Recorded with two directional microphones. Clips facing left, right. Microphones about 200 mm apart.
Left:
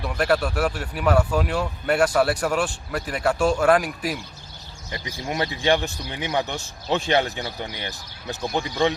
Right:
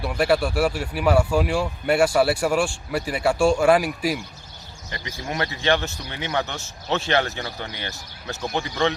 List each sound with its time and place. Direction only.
0.0 s speech: 10° right (ahead or behind)
4.9 s speech: 20° left (ahead or behind)